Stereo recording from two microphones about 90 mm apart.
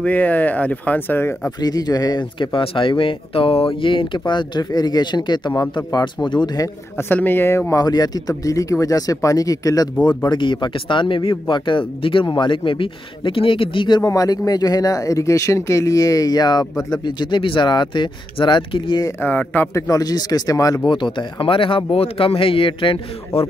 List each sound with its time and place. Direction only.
0.0 s speech: 15° left (ahead or behind)
1.6 s speech: 50° left (ahead or behind)
2.3 s speech: 65° left (ahead or behind)
4.3 s speech: 55° left (ahead or behind)
5.9 s speech: 45° left (ahead or behind)
6.2 s speech: 55° left (ahead or behind)
7.0 s speech: 20° left (ahead or behind)
7.7 s speech: 45° left (ahead or behind)
10.0 s speech: 60° left (ahead or behind)
14.0 s speech: 40° left (ahead or behind); by 19.0 s 65° left (ahead or behind)
19.2 s speech: 20° left (ahead or behind)
19.7 s speech: 40° left (ahead or behind)
20.9 s speech: 60° left (ahead or behind); by 21.8 s 75° left (ahead or behind)
21.9 s speech: 90° left